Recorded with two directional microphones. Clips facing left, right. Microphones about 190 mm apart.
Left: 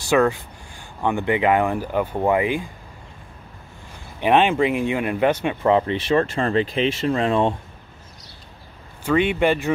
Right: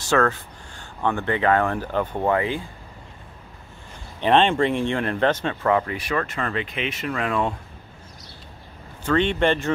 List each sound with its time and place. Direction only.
0.0 s speech: 15° left (ahead or behind)
4.2 s speech: 10° left (ahead or behind); by 7.5 s 25° left (ahead or behind)
9.0 s speech: 10° left (ahead or behind)